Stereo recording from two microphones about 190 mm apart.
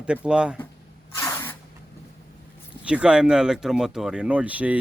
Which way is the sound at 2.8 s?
5° right (ahead or behind).